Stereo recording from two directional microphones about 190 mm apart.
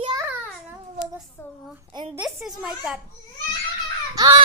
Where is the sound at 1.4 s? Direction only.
15° left (ahead or behind).